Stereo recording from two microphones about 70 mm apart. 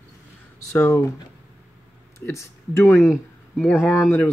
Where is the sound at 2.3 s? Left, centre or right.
Left.